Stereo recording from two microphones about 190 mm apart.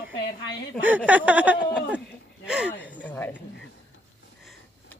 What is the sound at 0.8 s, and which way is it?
Speech, 10° right (ahead or behind).